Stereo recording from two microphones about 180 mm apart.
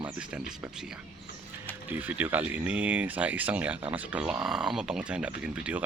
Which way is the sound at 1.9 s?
10° right (ahead or behind).